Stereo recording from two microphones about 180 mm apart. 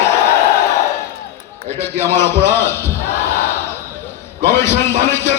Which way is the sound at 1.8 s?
15° left (ahead or behind).